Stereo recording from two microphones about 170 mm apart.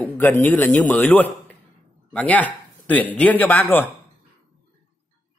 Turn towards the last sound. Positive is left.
turn(degrees=10)  # may be behind; listen again after turning